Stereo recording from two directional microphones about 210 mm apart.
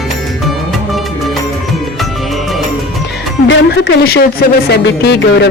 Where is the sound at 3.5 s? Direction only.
55° left (ahead or behind).